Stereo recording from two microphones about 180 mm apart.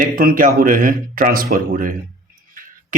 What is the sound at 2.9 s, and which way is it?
Beatboxing, 45° right (ahead or behind).